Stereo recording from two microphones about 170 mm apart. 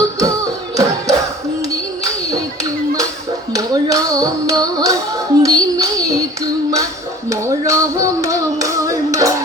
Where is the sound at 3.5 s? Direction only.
20° right (ahead or behind).